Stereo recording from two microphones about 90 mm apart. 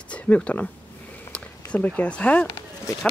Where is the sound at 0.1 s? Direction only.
15° left (ahead or behind).